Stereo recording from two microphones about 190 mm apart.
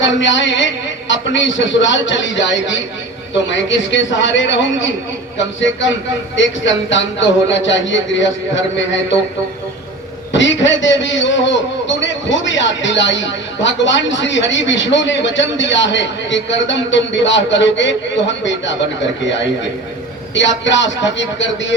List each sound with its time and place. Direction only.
0.0 s a man's voice: 75° left (ahead or behind)
10.3 s a man's voice: 70° left (ahead or behind)